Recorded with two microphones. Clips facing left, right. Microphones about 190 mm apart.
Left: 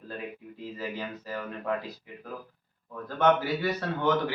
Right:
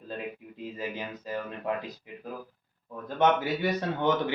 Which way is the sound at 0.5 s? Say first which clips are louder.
Even; 20° right (ahead or behind).